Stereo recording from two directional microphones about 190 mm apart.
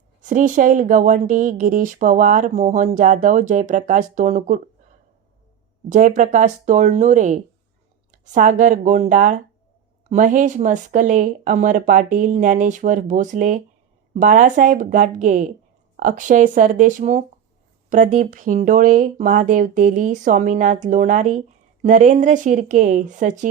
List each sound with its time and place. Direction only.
0.2 s speech: 40° right (ahead or behind)
5.9 s speech: 40° right (ahead or behind)